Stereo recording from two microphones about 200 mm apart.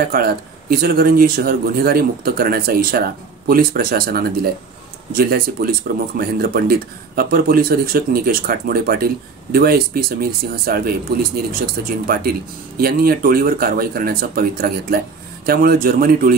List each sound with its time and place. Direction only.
0.1 s speech: 50° right (ahead or behind)